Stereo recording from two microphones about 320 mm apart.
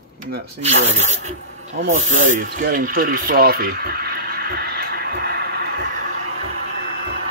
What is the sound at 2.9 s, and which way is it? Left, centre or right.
Speech, right.